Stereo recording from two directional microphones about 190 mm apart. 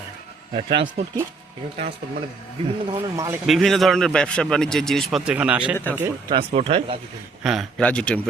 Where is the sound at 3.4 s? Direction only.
Centre (ahead or behind).